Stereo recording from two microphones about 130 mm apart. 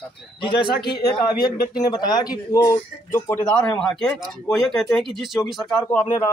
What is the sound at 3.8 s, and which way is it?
Speech, 5° left (ahead or behind).